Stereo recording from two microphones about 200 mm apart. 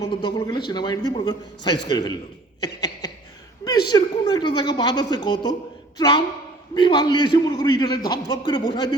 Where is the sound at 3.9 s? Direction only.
20° left (ahead or behind).